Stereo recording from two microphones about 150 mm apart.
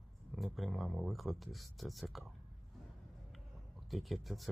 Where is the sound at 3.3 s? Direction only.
Centre (ahead or behind).